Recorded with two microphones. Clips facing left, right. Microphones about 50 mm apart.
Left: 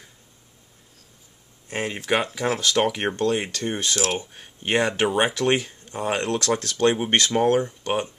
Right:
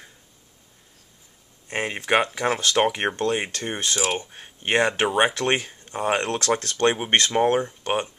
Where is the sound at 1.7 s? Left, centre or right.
Centre.